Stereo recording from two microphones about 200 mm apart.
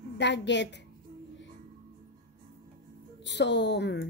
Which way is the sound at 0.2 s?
60° left (ahead or behind).